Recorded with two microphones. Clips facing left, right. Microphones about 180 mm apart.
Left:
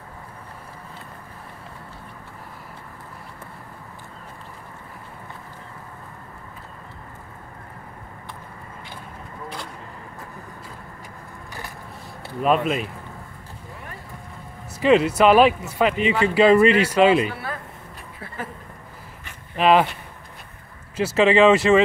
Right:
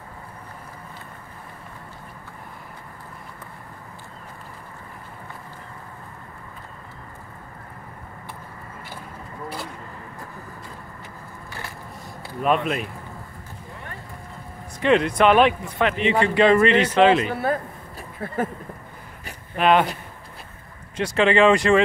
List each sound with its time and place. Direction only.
12.4 s speech: centre (ahead or behind)
14.8 s a man's voice: 5° left (ahead or behind)
17.3 s speech: 45° right (ahead or behind)
19.5 s speech: centre (ahead or behind)
20.9 s speech: 5° left (ahead or behind)